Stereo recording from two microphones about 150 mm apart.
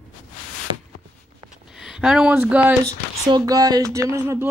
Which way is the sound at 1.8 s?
5° right (ahead or behind).